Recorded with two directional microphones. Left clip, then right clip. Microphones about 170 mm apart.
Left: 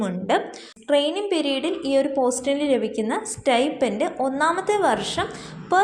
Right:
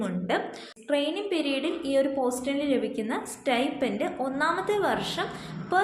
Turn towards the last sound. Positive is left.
turn(degrees=35)  # may be behind; listen again after turning